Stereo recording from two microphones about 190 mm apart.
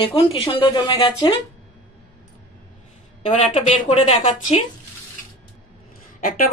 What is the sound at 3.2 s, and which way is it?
A woman's voice, 30° left (ahead or behind).